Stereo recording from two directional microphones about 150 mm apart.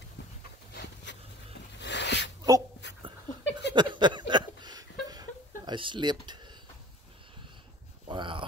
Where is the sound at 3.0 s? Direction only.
30° right (ahead or behind).